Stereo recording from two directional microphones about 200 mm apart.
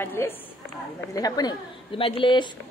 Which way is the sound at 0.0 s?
10° left (ahead or behind).